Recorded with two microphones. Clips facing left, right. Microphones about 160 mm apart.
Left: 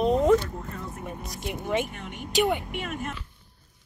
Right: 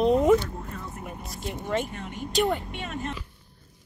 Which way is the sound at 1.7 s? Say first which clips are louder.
Even; 10° left (ahead or behind).